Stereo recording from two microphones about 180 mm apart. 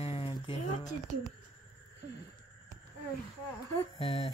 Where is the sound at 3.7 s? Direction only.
30° left (ahead or behind).